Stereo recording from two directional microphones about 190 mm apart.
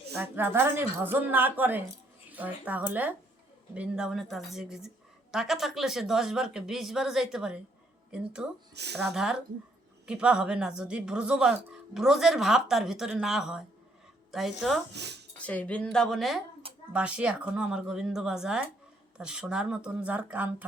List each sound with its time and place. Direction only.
0.2 s a woman's voice: 10° right (ahead or behind)
8.7 s speech: 60° right (ahead or behind)
9.1 s speech: 5° right (ahead or behind)
14.9 s speech: 60° right (ahead or behind)
15.4 s speech: 5° left (ahead or behind); by 20.7 s 10° right (ahead or behind)